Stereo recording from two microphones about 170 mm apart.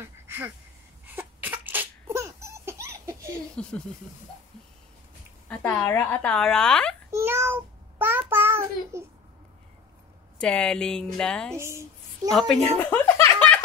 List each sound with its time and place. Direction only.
0.0 s a sound: 15° right (ahead or behind)
3.6 s speech: 5° left (ahead or behind)
5.5 s speech: 10° left (ahead or behind)
7.1 s child singing: 15° right (ahead or behind)
10.4 s speech: 5° left (ahead or behind)
11.5 s speech: 15° right (ahead or behind)
12.3 s speech: centre (ahead or behind)